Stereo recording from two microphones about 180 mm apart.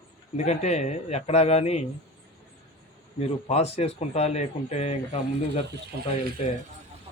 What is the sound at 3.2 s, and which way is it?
Speech, 35° left (ahead or behind).